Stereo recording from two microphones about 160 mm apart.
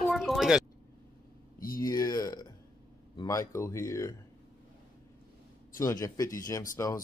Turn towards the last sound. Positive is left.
turn(degrees=20)  # may be behind; listen again after turning